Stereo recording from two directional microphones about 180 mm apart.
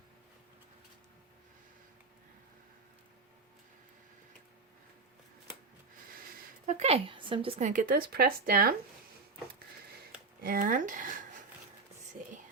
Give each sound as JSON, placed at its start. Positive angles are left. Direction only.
{"t": 6.7, "sound": "a woman's voice", "side_deg": -35}
{"t": 7.7, "sound": "speech", "side_deg": -50}
{"t": 10.4, "sound": "speech", "side_deg": -50}
{"t": 12.2, "sound": "music", "side_deg": -45}